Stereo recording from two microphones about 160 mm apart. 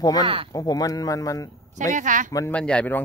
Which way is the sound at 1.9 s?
55° right (ahead or behind).